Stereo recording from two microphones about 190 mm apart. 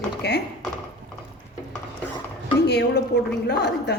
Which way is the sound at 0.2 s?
60° left (ahead or behind).